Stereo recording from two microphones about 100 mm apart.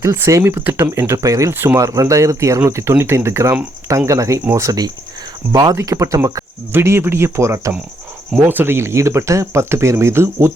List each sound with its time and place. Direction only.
0.0 s speech: 30° right (ahead or behind)
1.5 s speech: 20° right (ahead or behind)
1.8 s speech: 35° right (ahead or behind)
5.7 s speech: 30° right (ahead or behind)